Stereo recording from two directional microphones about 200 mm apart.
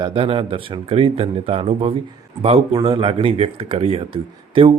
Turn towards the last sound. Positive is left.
turn(degrees=-25)  # may be behind; listen again after turning